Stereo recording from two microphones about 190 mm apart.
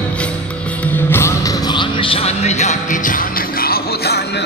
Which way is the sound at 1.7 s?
25° left (ahead or behind).